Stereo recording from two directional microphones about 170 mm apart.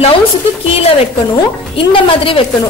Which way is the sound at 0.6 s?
35° left (ahead or behind).